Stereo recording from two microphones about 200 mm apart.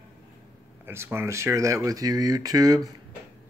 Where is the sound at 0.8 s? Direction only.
10° right (ahead or behind).